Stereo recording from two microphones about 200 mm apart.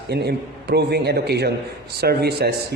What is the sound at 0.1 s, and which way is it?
A man's voice, 55° right (ahead or behind).